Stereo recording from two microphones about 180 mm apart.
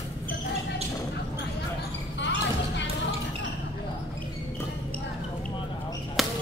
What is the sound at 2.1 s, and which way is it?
Basketball bounce, 85° left.